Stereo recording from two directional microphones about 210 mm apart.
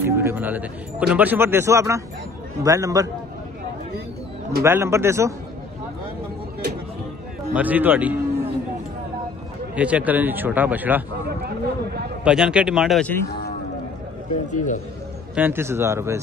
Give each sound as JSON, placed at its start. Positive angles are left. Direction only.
{"t": 0.0, "sound": "speech", "side_deg": -10}
{"t": 4.6, "sound": "speech", "side_deg": -10}
{"t": 7.5, "sound": "speech", "side_deg": -10}
{"t": 9.8, "sound": "speech", "side_deg": -5}
{"t": 11.2, "sound": "a sound", "side_deg": -50}
{"t": 12.3, "sound": "speech", "side_deg": -5}
{"t": 14.5, "sound": "a man's voice", "side_deg": 35}
{"t": 15.3, "sound": "speech", "side_deg": -10}